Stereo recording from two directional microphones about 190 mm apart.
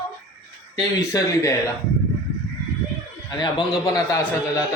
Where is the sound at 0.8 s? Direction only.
15° left (ahead or behind).